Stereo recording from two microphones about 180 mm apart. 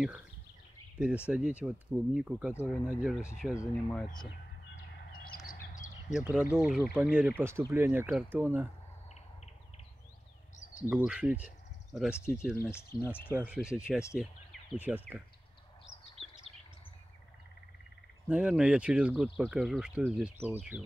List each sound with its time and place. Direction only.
0.9 s speech: 5° right (ahead or behind)
2.5 s speech: 10° left (ahead or behind)
2.8 s speech: 5° right (ahead or behind)
5.5 s bird: 45° left (ahead or behind)
6.1 s speech: 5° right (ahead or behind)
10.9 s speech: 10° right (ahead or behind)
13.0 s speech: 10° left (ahead or behind)
13.3 s speech: 5° right (ahead or behind)
18.3 s speech: 5° right (ahead or behind)